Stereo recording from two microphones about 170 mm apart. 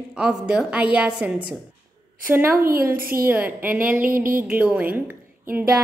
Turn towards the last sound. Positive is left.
turn(degrees=-15)  # may be behind; listen again after turning